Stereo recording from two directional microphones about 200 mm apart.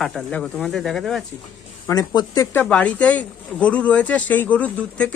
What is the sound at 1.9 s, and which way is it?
Speech, 20° left (ahead or behind).